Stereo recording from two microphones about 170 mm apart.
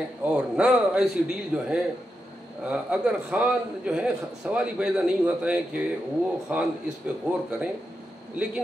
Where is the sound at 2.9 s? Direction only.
5° right (ahead or behind).